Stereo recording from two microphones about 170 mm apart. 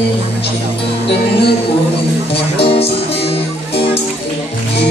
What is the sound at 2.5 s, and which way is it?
Speech, 35° left (ahead or behind).